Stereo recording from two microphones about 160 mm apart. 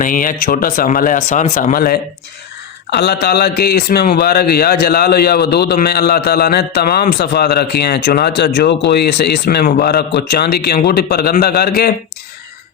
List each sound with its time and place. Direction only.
0.0 s speech: 60° left (ahead or behind)
2.9 s a man's voice: 90° left; by 11.9 s 75° left (ahead or behind)